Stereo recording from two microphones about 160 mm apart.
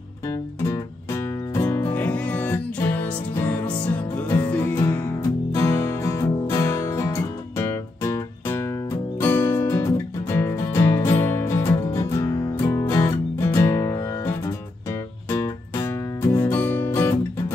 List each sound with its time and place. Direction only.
0.3 s music: 15° left (ahead or behind)